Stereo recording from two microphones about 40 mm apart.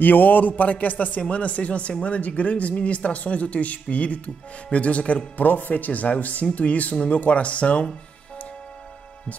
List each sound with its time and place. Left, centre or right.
0.0 s a man's voice: left